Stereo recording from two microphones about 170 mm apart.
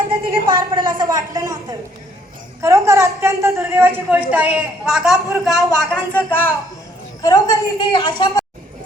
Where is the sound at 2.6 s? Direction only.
15° right (ahead or behind); by 6.5 s 10° left (ahead or behind).